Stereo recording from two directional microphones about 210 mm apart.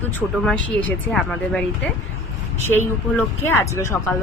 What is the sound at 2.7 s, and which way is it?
Speech, 10° left (ahead or behind).